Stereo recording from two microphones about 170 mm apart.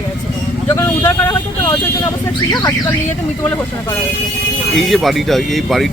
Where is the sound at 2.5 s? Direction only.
25° left (ahead or behind).